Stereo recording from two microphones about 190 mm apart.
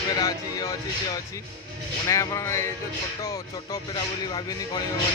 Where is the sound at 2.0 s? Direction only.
15° left (ahead or behind).